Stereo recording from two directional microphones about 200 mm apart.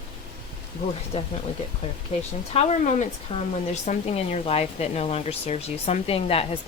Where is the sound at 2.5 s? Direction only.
30° left (ahead or behind).